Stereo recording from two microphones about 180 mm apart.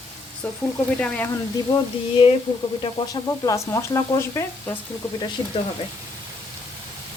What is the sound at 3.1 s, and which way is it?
Speech, 20° left (ahead or behind).